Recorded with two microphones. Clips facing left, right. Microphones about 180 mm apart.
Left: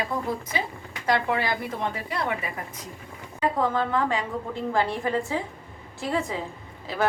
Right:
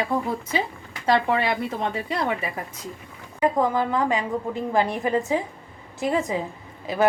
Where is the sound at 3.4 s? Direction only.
20° right (ahead or behind).